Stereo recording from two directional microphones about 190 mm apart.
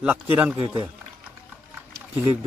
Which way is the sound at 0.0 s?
5° right (ahead or behind).